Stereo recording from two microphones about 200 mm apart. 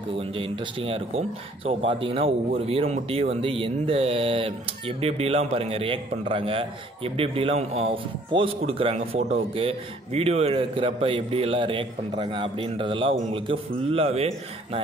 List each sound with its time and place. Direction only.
0.4 s a man's voice: 30° right (ahead or behind)